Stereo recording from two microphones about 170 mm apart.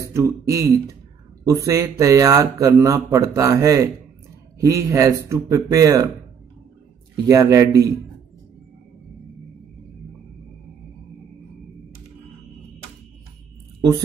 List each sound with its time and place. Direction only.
0.0 s speech: 15° right (ahead or behind)
7.2 s speech: 20° right (ahead or behind)